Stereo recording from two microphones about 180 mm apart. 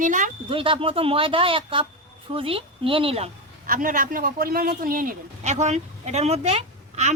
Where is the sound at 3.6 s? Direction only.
50° right (ahead or behind).